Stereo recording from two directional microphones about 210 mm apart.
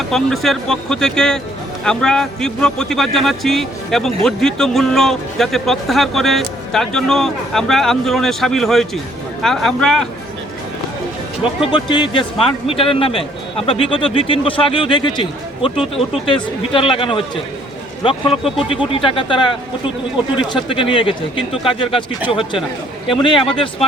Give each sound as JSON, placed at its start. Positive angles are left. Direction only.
{"t": 0.1, "sound": "speech", "side_deg": 0}
{"t": 11.6, "sound": "speech", "side_deg": 20}